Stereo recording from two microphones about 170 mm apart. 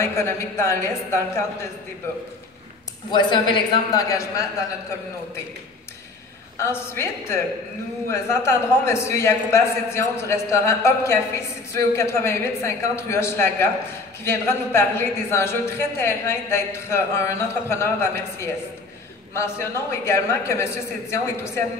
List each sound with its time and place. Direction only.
0.0 s a woman's voice: 15° left (ahead or behind)
3.1 s a man's voice: 25° left (ahead or behind)
6.6 s a woman's voice: 15° left (ahead or behind)